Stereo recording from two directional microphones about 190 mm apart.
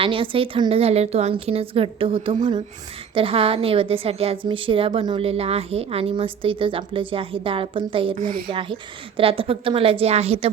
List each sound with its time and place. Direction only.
0.0 s a woman's voice: 30° right (ahead or behind)